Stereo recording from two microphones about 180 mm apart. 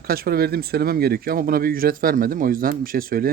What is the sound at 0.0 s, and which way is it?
Speech, 55° right (ahead or behind).